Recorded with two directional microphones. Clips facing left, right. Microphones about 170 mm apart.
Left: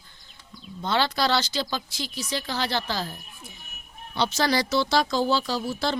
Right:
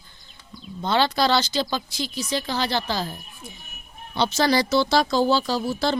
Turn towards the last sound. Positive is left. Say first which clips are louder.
# right 3 dB
turn(degrees=-35)  # may be behind; listen again after turning